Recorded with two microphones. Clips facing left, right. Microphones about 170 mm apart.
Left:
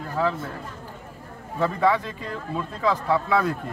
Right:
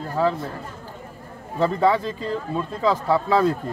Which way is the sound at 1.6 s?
25° right (ahead or behind).